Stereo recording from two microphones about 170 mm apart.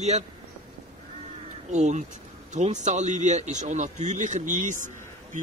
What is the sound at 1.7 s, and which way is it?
A man's voice, 45° right (ahead or behind).